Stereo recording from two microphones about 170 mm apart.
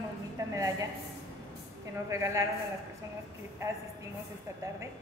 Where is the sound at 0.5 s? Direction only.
20° right (ahead or behind).